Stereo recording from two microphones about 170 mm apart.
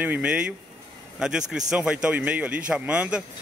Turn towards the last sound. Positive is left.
turn(degrees=-5)  # may be behind; listen again after turning